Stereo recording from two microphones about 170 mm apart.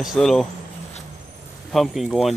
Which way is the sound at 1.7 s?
Centre (ahead or behind).